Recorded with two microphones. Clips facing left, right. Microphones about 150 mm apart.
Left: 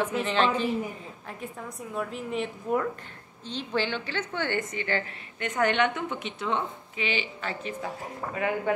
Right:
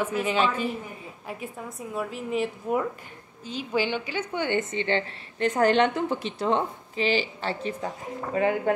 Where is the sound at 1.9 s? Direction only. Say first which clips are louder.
Right 2 dB; 5° right (ahead or behind).